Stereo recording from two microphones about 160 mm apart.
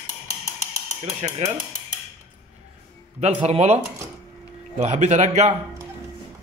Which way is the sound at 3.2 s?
40° right (ahead or behind).